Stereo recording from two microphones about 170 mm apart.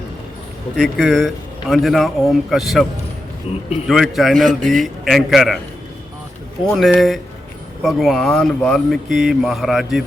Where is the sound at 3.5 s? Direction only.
35° left (ahead or behind).